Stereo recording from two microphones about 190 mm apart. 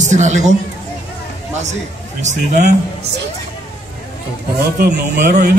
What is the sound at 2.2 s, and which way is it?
Speech, 40° right (ahead or behind).